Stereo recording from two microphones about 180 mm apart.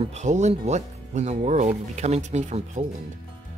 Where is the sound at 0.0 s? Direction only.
40° right (ahead or behind).